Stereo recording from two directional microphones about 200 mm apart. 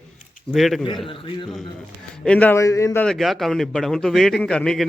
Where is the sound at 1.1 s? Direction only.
25° left (ahead or behind).